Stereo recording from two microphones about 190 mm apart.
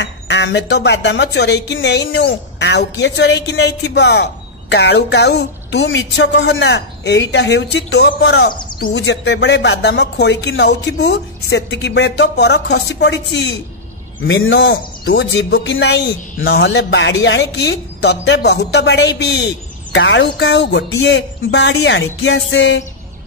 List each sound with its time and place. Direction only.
0.0 s speech: 65° left (ahead or behind)
14.2 s speech: 85° left